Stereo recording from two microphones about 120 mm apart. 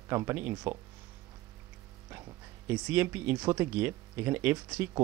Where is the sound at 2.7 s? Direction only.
15° right (ahead or behind).